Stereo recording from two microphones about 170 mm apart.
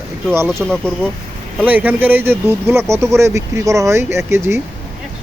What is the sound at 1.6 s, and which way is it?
Speech, 10° right (ahead or behind).